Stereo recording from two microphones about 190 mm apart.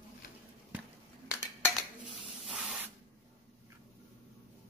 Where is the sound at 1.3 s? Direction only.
15° left (ahead or behind).